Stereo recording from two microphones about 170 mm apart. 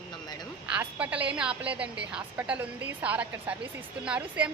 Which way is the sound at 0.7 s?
10° right (ahead or behind).